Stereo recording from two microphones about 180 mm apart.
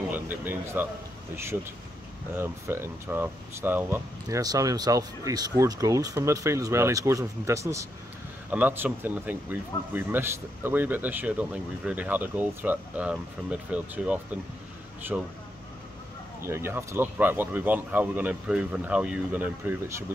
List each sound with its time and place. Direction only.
0.1 s speech: 10° right (ahead or behind)
2.3 s speech: 15° right (ahead or behind)
16.4 s speech: 15° right (ahead or behind)